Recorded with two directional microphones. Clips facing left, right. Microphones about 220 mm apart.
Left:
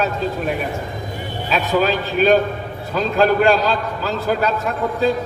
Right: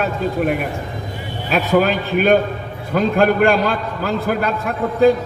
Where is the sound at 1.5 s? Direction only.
55° right (ahead or behind).